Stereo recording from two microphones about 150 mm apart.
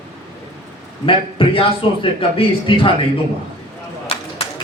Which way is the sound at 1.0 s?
35° left (ahead or behind).